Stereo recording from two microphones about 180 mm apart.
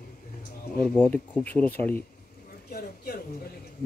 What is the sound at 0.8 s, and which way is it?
Speech, 5° left (ahead or behind).